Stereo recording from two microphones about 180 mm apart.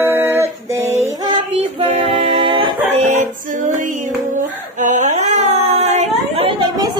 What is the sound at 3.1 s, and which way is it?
Music, 45° right (ahead or behind).